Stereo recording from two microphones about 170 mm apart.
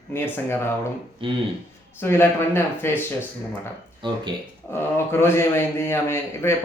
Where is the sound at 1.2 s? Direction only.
30° right (ahead or behind).